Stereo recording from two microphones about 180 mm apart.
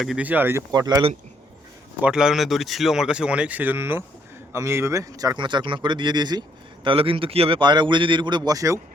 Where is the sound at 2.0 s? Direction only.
5° right (ahead or behind).